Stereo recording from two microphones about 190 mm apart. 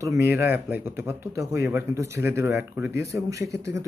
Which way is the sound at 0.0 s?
15° right (ahead or behind).